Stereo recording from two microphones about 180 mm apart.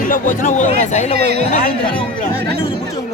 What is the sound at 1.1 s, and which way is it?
Speech, 60° right (ahead or behind).